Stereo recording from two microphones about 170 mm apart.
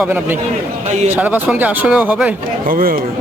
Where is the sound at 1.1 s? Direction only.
10° right (ahead or behind).